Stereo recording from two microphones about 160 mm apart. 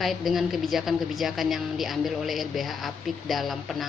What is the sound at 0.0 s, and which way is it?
A woman's voice, centre (ahead or behind).